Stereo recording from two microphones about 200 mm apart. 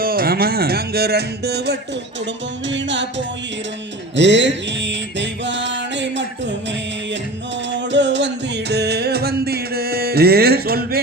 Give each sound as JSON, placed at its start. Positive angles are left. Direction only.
{"t": 0.0, "sound": "speech", "side_deg": -45}
{"t": 2.6, "sound": "music", "side_deg": -65}
{"t": 7.7, "sound": "music", "side_deg": -60}